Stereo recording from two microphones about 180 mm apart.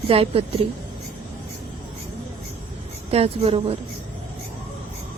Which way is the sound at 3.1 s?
35° right (ahead or behind).